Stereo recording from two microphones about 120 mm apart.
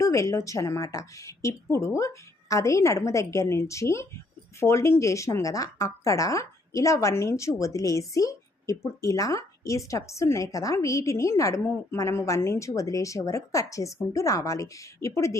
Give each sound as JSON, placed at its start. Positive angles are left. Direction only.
{"t": 0.0, "sound": "a woman's voice", "side_deg": 25}